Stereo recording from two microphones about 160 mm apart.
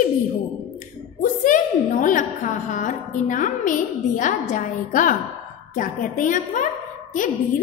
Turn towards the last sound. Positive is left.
turn(degrees=55)  # may be behind; listen again after turning